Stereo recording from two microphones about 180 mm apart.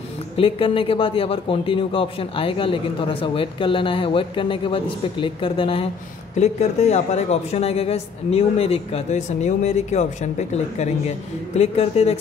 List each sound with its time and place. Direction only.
0.4 s a man's voice: 30° left (ahead or behind)